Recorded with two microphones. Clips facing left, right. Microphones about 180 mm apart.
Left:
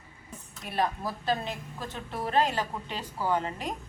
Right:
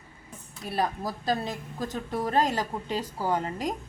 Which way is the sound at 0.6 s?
35° right (ahead or behind).